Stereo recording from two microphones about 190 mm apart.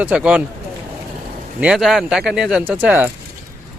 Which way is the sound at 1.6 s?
5° right (ahead or behind).